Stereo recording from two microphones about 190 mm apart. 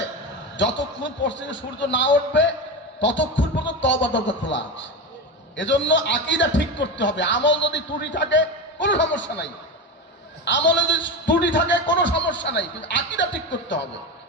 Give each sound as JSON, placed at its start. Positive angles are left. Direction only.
{"t": 0.5, "sound": "a man's voice", "side_deg": 70}